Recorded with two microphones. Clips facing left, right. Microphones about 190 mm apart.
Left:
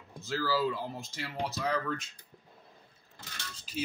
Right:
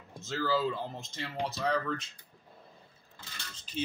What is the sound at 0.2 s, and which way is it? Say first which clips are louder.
Speech: right 1 dB; 20° right (ahead or behind).